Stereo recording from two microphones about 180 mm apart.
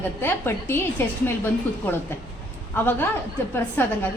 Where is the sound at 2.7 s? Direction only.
10° left (ahead or behind).